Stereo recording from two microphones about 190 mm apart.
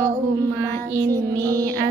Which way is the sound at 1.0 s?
20° right (ahead or behind).